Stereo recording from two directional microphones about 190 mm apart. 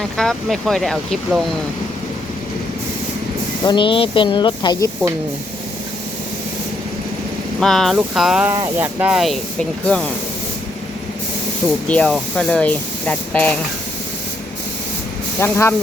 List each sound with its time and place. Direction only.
0.2 s speech: centre (ahead or behind)
3.7 s speech: 25° left (ahead or behind)
7.6 s speech: centre (ahead or behind)
11.9 s speech: 5° left (ahead or behind)
15.4 s speech: 15° left (ahead or behind)